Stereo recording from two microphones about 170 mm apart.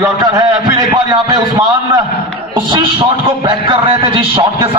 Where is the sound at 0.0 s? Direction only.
20° right (ahead or behind).